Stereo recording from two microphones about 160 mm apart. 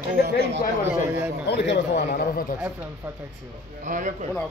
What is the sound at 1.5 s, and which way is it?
Speech, 90° left.